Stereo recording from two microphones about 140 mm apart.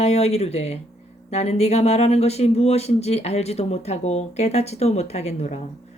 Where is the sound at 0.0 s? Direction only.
50° left (ahead or behind).